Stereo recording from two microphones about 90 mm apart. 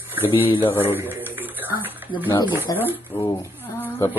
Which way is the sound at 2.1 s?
70° left (ahead or behind).